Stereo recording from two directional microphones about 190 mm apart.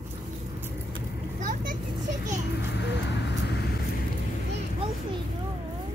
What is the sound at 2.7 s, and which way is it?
Vehicle, 65° left (ahead or behind).